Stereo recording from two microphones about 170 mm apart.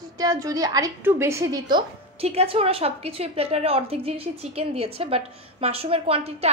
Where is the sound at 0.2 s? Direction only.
20° right (ahead or behind).